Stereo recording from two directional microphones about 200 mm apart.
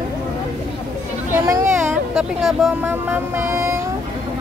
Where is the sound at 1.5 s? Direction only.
15° right (ahead or behind).